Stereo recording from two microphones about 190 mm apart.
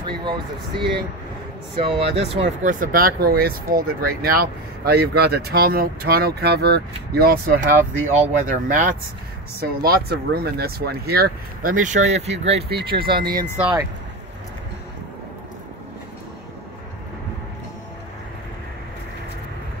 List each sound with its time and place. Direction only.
0.0 s speech: 25° right (ahead or behind); by 8.9 s 45° right (ahead or behind)
9.6 s speech: 55° right (ahead or behind); by 12.6 s 35° right (ahead or behind)
13.0 s speech: 55° right (ahead or behind)
13.6 s speech: 5° right (ahead or behind)